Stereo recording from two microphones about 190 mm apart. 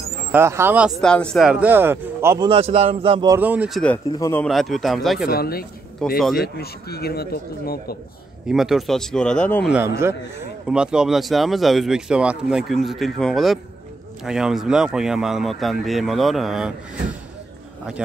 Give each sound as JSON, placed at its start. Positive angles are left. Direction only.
{"t": 0.3, "sound": "a man's voice", "side_deg": -15}
{"t": 1.0, "sound": "a man's voice", "side_deg": 5}
{"t": 2.5, "sound": "a man's voice", "side_deg": -30}
{"t": 3.3, "sound": "a man's voice", "side_deg": -10}
{"t": 4.5, "sound": "speech", "side_deg": 0}
{"t": 5.3, "sound": "speech", "side_deg": 55}
{"t": 6.0, "sound": "speech", "side_deg": 5}
{"t": 6.3, "sound": "a man's voice", "side_deg": 55}
{"t": 8.5, "sound": "speech", "side_deg": 0}
{"t": 9.7, "sound": "a man's voice", "side_deg": -10}